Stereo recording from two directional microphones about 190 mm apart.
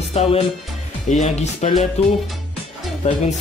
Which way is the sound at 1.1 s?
35° left (ahead or behind).